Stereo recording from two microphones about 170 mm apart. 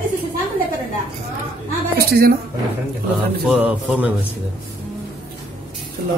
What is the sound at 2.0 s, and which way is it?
Speech, 65° right (ahead or behind).